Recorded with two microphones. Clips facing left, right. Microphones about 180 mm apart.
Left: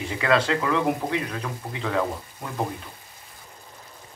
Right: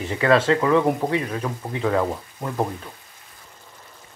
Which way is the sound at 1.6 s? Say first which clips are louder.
Right 5 dB; 30° right (ahead or behind).